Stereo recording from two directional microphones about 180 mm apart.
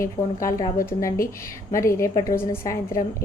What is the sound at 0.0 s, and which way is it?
A woman's voice, 15° left (ahead or behind).